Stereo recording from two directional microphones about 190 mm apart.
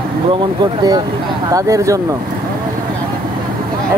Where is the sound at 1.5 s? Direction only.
15° right (ahead or behind).